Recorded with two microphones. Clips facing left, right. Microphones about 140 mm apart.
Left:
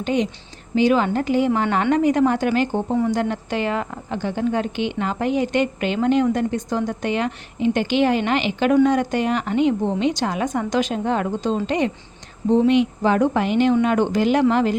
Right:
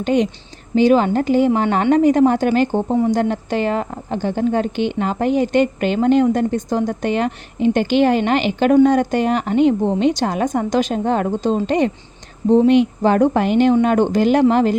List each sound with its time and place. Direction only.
0.0 s a woman's voice: 45° right (ahead or behind)